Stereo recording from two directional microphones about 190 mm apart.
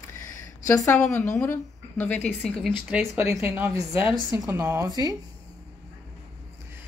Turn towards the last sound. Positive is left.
turn(degrees=-20)  # may be behind; listen again after turning